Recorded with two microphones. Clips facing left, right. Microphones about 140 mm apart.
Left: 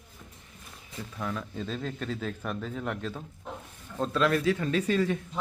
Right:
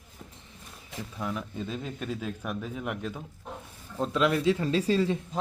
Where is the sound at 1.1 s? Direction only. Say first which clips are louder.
Even; 10° right (ahead or behind).